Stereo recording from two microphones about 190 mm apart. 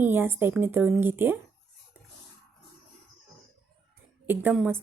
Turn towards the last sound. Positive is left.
turn(degrees=-10)  # may be behind; listen again after turning